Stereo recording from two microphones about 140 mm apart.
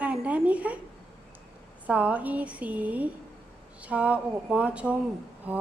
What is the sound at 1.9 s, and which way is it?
A woman's voice, 10° right (ahead or behind).